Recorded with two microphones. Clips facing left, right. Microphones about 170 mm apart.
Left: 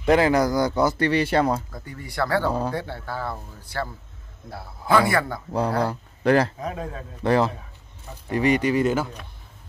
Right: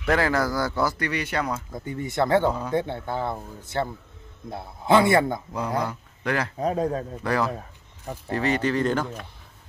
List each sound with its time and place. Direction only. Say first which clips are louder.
0.0 s speech: left 4 dB; 20° left (ahead or behind)
1.7 s speech: right 7 dB; 20° right (ahead or behind)
5.8 s speech: left 3 dB; 35° left (ahead or behind)
6.6 s speech: right 7 dB; 35° right (ahead or behind)
7.2 s speech: left 5 dB; 25° left (ahead or behind)
8.3 s speech: left 3 dB; 15° left (ahead or behind)